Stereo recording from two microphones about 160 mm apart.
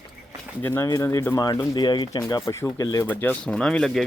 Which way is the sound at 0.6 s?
15° left (ahead or behind).